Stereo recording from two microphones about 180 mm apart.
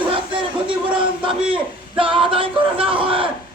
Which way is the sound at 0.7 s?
30° right (ahead or behind).